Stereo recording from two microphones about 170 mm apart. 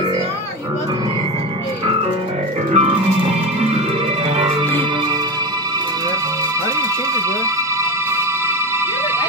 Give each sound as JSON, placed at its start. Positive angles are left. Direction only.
{"t": 2.7, "sound": "music", "side_deg": -40}